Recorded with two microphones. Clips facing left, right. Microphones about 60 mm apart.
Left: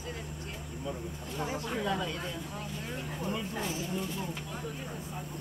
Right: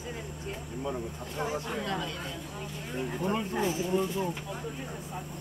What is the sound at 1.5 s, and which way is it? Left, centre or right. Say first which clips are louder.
Speech: right 1 dB; centre.